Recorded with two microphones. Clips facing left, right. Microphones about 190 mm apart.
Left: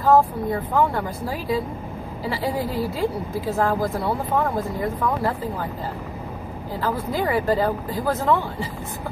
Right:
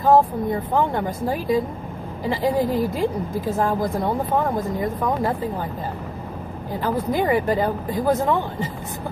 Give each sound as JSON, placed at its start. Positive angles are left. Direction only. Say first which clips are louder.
{"t": 0.0, "sound": "a woman's voice", "louder": "right 1 dB", "side_deg": -20}
{"t": 6.8, "sound": "speech", "louder": "right 3 dB", "side_deg": -20}